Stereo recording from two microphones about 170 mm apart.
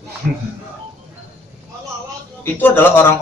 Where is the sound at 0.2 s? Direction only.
55° right (ahead or behind).